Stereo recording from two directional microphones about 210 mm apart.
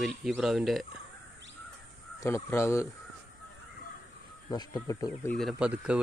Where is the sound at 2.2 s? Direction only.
15° left (ahead or behind).